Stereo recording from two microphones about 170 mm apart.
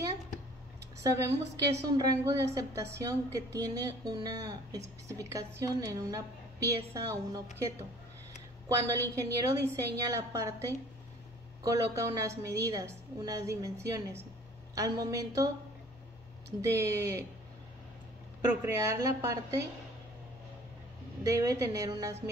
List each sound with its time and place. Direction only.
1.0 s a woman's voice: 20° right (ahead or behind)
8.6 s a woman's voice: 15° right (ahead or behind)
11.6 s a woman's voice: 20° right (ahead or behind)
16.7 s a woman's voice: 15° right (ahead or behind)
18.5 s a woman's voice: 15° right (ahead or behind)
21.2 s a woman's voice: 20° right (ahead or behind)